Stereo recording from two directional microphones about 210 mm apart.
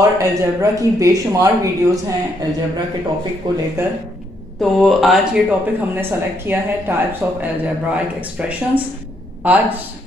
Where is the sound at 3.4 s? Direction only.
20° right (ahead or behind).